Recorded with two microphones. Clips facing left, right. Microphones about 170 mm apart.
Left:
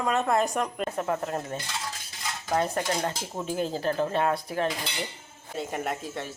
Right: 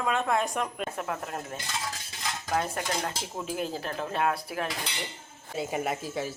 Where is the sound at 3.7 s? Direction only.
Centre (ahead or behind).